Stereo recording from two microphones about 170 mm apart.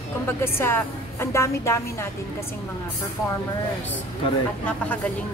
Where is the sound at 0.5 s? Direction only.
15° left (ahead or behind).